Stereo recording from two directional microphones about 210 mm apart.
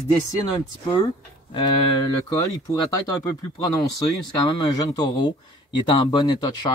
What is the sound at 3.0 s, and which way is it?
Speech, 15° left (ahead or behind).